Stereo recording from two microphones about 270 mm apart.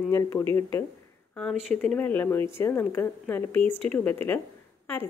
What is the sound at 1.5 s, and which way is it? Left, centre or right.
Speech, right.